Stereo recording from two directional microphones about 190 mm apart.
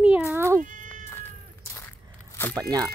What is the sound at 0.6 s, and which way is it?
Cat, 45° right (ahead or behind).